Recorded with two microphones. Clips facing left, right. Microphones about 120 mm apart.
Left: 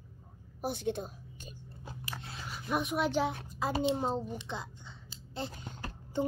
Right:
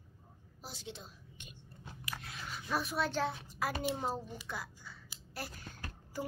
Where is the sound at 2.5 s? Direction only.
5° left (ahead or behind).